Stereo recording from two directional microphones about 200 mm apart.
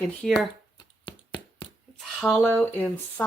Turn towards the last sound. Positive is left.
turn(degrees=10)  # may be behind; listen again after turning